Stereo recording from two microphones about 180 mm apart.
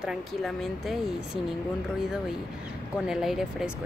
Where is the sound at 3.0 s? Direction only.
Centre (ahead or behind).